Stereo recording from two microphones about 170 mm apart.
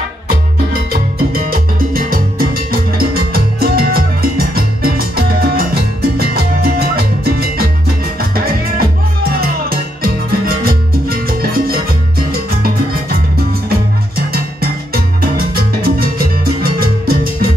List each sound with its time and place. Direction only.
2.0 s music: 55° right (ahead or behind)
14.1 s music: 60° right (ahead or behind)
15.3 s salsa music: 60° right (ahead or behind)
16.8 s music: 60° right (ahead or behind)